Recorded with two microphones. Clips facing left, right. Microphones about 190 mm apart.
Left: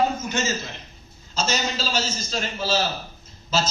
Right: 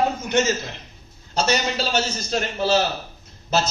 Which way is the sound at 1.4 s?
65° right (ahead or behind).